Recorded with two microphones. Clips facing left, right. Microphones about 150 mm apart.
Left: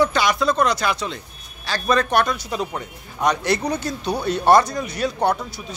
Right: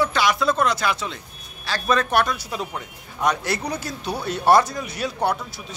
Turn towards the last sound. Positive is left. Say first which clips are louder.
# left 3 dB
turn(degrees=-5)  # may be behind; listen again after turning